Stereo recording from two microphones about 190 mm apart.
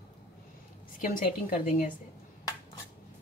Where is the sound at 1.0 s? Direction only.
50° left (ahead or behind).